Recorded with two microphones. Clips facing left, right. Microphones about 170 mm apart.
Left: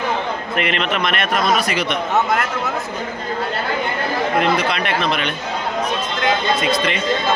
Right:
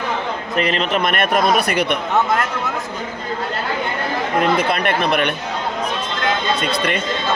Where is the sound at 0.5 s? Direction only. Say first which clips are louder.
Right 3 dB; 35° right (ahead or behind); by 2.0 s 55° right (ahead or behind).